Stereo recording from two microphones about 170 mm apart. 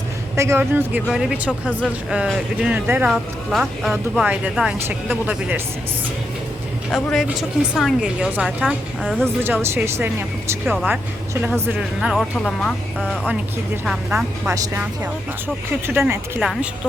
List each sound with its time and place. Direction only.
0.3 s speech: 15° right (ahead or behind)
6.9 s a woman's voice: centre (ahead or behind)
9.2 s a woman's voice: 15° right (ahead or behind); by 12.7 s 5° left (ahead or behind)
13.8 s a woman's voice: 5° right (ahead or behind)
14.4 s speech: 15° right (ahead or behind)
15.9 s speech: 15° right (ahead or behind)
16.4 s a woman's voice: centre (ahead or behind)